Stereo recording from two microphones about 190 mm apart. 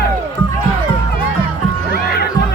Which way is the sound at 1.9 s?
55° left (ahead or behind).